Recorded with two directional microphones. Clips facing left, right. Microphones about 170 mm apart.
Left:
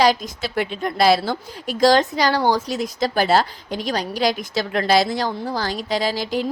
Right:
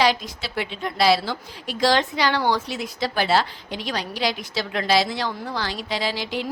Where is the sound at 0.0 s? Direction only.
45° left (ahead or behind).